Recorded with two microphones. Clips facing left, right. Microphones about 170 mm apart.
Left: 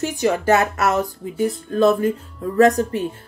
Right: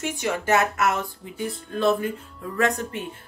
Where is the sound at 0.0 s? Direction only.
35° left (ahead or behind).